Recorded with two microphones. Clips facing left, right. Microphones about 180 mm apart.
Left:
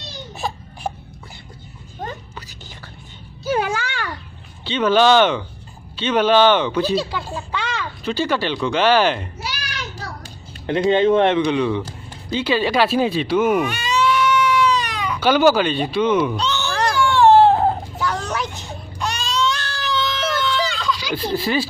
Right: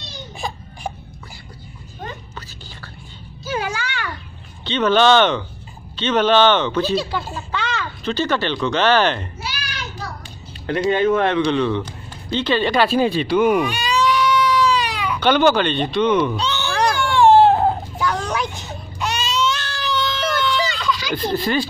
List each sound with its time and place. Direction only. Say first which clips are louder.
0.3 s baby cry: left 2 dB; 5° left (ahead or behind)
2.3 s whispering: right 1 dB; 15° left (ahead or behind)
3.4 s music: left 4 dB; 60° left (ahead or behind)
4.6 s a man's voice: even; 10° left (ahead or behind)
10.7 s a man's voice: left 2 dB; 20° left (ahead or behind); by 13.7 s 5° left (ahead or behind)
13.9 s baby cry: even; 10° right (ahead or behind)
15.1 s a man's voice: left 1 dB; 5° left (ahead or behind)
16.3 s baby cry: right 1 dB; centre (ahead or behind)